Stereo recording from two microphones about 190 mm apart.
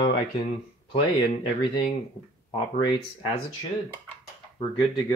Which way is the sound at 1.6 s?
25° left (ahead or behind).